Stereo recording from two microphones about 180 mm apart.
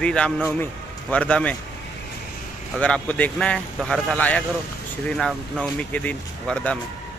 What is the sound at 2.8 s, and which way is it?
Speech, 10° left (ahead or behind).